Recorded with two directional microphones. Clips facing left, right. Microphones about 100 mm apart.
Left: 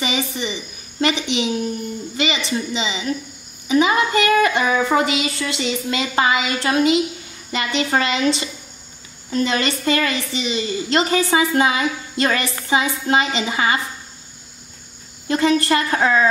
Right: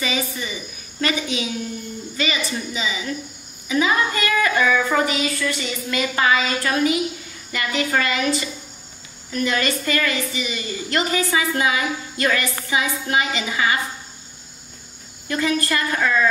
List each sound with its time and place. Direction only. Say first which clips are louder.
0.0 s a woman's voice: left 2 dB; 20° left (ahead or behind)
15.2 s a woman's voice: left 5 dB; 25° left (ahead or behind)